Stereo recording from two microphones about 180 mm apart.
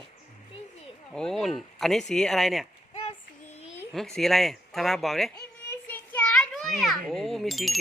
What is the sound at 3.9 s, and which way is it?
A child's voice, centre (ahead or behind).